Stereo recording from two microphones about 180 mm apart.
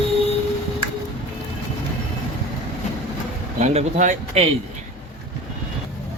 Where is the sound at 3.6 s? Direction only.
40° right (ahead or behind).